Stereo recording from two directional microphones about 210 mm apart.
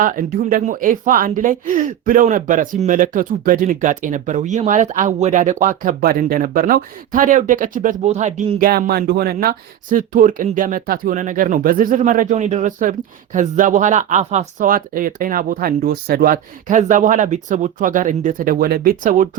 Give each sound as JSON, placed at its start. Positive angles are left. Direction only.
{"t": 0.0, "sound": "speech", "side_deg": -40}